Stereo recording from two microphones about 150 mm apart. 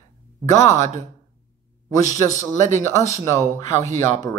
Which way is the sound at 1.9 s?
20° left (ahead or behind).